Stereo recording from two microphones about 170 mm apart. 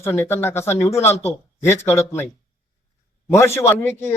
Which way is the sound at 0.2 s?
15° left (ahead or behind).